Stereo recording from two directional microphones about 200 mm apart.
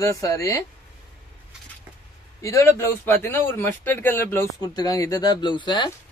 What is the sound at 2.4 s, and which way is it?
Speech, 15° left (ahead or behind).